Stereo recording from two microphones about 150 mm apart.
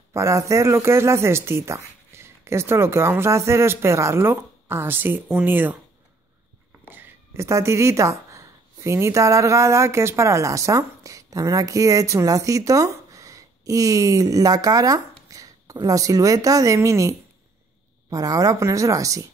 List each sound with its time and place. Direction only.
0.1 s speech: 20° right (ahead or behind)
6.8 s a woman's voice: 15° right (ahead or behind)
18.1 s speech: 25° right (ahead or behind)